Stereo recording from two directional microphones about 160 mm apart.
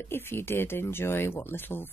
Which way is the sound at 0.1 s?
15° left (ahead or behind).